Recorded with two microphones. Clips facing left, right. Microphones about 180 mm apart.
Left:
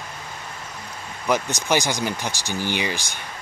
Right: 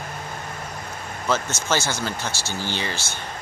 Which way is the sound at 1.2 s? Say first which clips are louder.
Left 2 dB; 15° left (ahead or behind).